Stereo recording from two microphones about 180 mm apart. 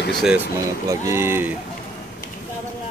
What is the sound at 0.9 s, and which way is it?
Speech, 15° right (ahead or behind).